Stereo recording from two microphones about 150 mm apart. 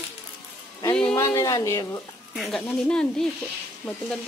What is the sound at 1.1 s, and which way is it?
Speech, 20° left (ahead or behind).